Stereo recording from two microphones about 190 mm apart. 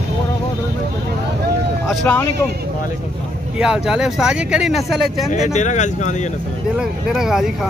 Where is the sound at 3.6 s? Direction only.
5° right (ahead or behind).